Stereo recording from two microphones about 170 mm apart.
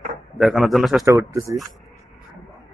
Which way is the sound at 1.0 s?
20° right (ahead or behind).